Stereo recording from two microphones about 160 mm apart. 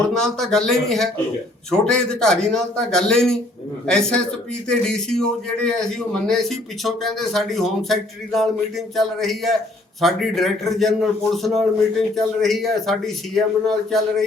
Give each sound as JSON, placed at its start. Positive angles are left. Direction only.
{"t": 0.1, "sound": "speech", "side_deg": 5}